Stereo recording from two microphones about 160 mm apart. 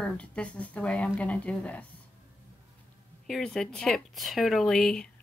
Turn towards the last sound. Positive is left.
turn(degrees=5)  # may be behind; listen again after turning